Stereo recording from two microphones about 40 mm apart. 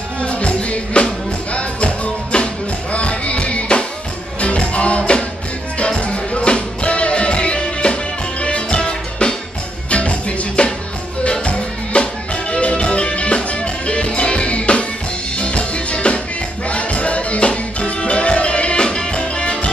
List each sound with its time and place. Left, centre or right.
0.2 s music: left